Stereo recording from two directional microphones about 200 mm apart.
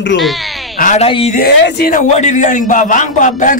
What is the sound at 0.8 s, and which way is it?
Speech, 40° left (ahead or behind).